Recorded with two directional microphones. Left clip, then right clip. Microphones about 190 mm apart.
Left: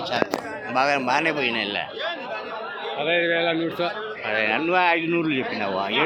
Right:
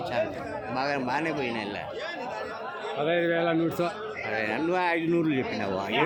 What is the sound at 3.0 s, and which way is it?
Speech, 45° right (ahead or behind).